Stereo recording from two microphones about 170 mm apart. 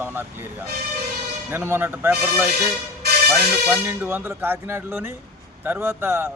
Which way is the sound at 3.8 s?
10° right (ahead or behind).